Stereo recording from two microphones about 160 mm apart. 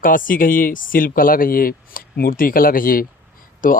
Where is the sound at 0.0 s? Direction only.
60° left (ahead or behind).